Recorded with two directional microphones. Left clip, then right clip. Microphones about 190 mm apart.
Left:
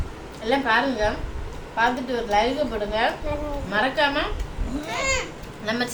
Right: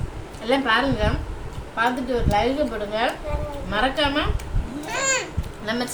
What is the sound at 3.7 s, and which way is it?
Speech, 5° right (ahead or behind).